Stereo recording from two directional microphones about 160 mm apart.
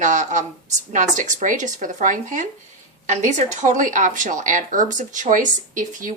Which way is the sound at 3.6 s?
55° right (ahead or behind).